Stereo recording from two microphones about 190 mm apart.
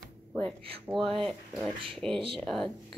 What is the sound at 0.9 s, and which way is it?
A woman's voice, centre (ahead or behind).